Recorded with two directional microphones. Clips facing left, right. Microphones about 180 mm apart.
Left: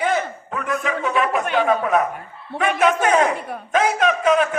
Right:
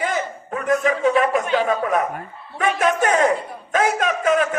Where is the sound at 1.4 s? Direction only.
55° left (ahead or behind).